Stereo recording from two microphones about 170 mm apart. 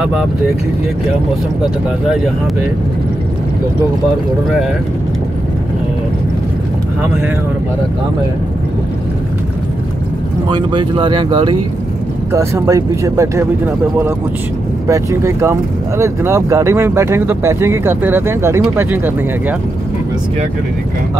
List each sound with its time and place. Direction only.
10.5 s speech: 30° right (ahead or behind)
12.3 s speech: 15° right (ahead or behind)